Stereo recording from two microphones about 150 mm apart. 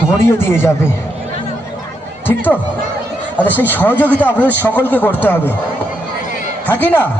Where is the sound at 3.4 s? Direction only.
15° left (ahead or behind).